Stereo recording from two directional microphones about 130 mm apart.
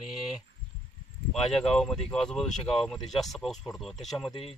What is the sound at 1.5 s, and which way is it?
Speech, 5° left (ahead or behind).